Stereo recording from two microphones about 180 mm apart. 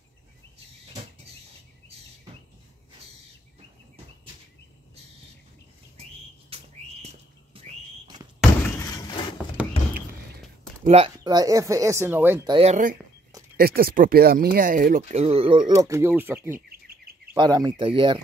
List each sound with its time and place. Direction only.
6.5 s a sound: 35° right (ahead or behind)
8.7 s door: 20° left (ahead or behind)
9.6 s a sound: 10° right (ahead or behind)
9.9 s a sound: 55° right (ahead or behind)
10.9 s speech: 35° right (ahead or behind)
11.2 s speech: 20° right (ahead or behind)
12.4 s speech: 30° right (ahead or behind)
13.6 s speech: 55° right (ahead or behind)
15.0 s speech: 35° right (ahead or behind); by 16.6 s 10° right (ahead or behind)
16.6 s bird: 55° right (ahead or behind)
17.4 s speech: 20° right (ahead or behind)